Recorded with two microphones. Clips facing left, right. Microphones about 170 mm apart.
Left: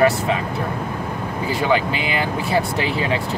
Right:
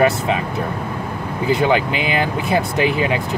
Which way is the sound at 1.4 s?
20° right (ahead or behind).